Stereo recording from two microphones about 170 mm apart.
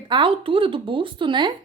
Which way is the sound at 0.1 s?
30° right (ahead or behind).